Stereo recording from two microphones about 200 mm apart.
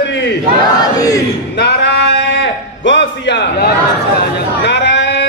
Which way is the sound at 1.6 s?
60° left (ahead or behind).